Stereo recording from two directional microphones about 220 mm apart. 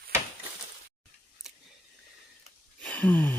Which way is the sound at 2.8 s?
5° left (ahead or behind).